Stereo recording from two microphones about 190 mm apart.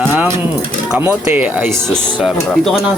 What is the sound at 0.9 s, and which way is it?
Speech, 10° right (ahead or behind).